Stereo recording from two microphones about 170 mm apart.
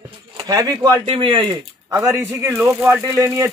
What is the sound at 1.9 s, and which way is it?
Speech, 15° right (ahead or behind).